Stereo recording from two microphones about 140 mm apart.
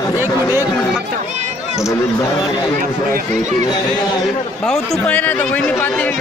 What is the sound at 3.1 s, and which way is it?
Speech, 60° right (ahead or behind).